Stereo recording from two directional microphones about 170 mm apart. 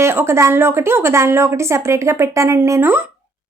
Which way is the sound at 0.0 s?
15° right (ahead or behind).